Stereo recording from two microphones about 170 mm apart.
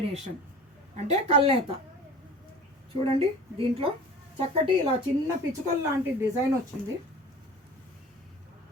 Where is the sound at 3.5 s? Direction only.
30° right (ahead or behind).